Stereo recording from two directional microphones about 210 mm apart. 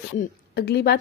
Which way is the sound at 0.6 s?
50° left (ahead or behind).